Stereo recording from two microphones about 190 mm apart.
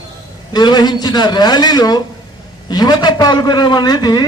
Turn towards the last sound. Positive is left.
turn(degrees=20)  # may be behind; listen again after turning